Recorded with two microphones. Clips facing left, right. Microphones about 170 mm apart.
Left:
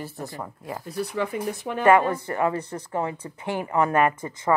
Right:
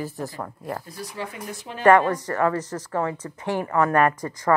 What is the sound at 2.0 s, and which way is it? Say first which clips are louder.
Speech: right 2 dB; 25° left (ahead or behind).